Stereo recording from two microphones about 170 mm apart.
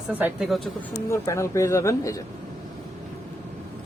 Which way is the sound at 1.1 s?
15° left (ahead or behind).